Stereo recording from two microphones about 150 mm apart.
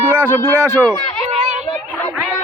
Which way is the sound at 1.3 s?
50° right (ahead or behind).